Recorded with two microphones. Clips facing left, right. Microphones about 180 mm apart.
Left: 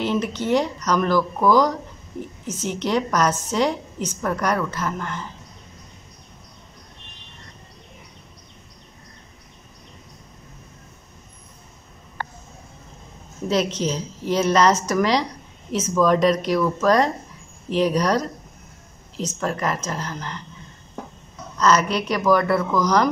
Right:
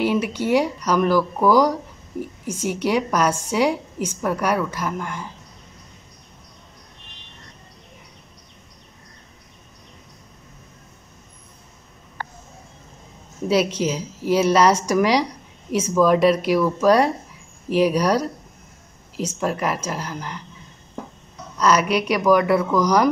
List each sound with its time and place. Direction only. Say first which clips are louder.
0.0 s a woman's voice: right 2 dB; 10° right (ahead or behind)
13.5 s a woman's voice: right 2 dB; 10° right (ahead or behind)
21.5 s a woman's voice: right 1 dB; 10° right (ahead or behind)